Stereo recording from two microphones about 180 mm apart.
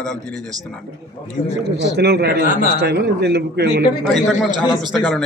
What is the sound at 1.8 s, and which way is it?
A man's voice, 65° right (ahead or behind).